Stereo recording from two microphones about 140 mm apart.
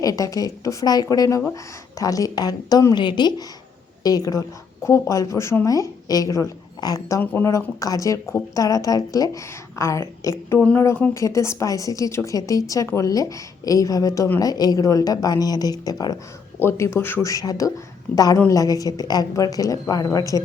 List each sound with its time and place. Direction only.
0.0 s a woman's voice: 25° left (ahead or behind)
10.6 s a woman's voice: 10° left (ahead or behind)